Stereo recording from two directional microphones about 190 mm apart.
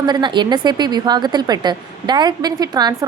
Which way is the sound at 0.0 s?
25° right (ahead or behind).